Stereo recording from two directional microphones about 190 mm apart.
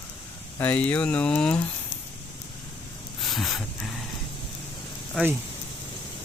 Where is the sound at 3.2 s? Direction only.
Centre (ahead or behind).